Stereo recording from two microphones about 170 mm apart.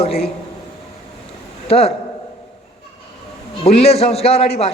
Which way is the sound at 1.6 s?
35° left (ahead or behind).